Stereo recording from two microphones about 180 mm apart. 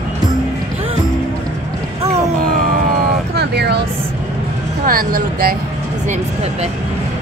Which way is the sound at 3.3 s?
65° right (ahead or behind).